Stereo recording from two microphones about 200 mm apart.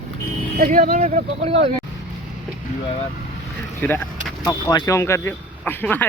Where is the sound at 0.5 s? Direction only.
45° right (ahead or behind).